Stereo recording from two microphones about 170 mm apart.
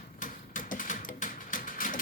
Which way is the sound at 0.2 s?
50° left (ahead or behind).